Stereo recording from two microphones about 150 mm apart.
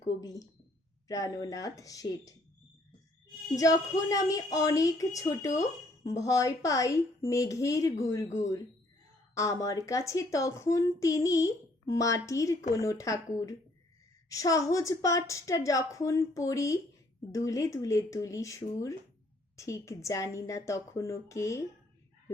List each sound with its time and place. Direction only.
0.0 s a woman's voice: 25° left (ahead or behind)
3.6 s a woman's voice: 20° left (ahead or behind)